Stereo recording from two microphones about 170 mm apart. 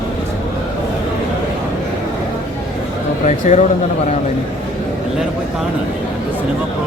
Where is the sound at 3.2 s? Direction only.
45° left (ahead or behind).